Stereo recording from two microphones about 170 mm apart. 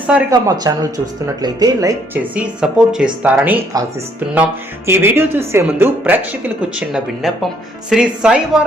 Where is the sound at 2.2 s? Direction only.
5° right (ahead or behind).